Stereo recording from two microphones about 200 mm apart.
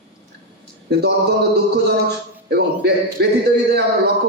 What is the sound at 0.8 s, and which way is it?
A man's voice, 55° right (ahead or behind).